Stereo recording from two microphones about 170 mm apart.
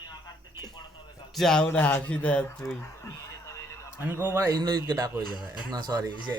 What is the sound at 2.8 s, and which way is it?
Radio, 20° left (ahead or behind).